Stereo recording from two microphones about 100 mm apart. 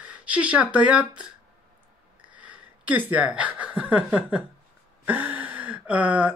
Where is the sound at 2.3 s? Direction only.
15° right (ahead or behind).